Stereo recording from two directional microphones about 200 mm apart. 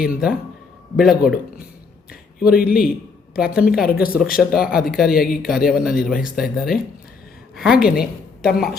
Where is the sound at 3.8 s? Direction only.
50° left (ahead or behind).